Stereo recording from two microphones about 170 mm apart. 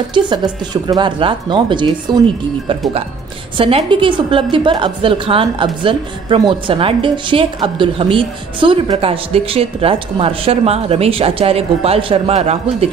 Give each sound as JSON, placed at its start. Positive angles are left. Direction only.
{"t": 0.1, "sound": "a woman's voice", "side_deg": -25}